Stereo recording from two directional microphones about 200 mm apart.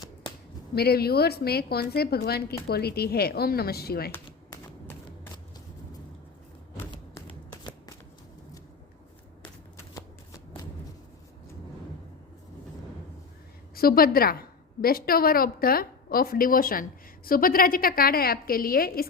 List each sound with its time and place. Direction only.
0.8 s a woman's voice: 50° left (ahead or behind)
7.6 s shuffling cards: 20° left (ahead or behind)
9.4 s shuffling cards: 15° left (ahead or behind)
13.7 s a woman's voice: 50° left (ahead or behind)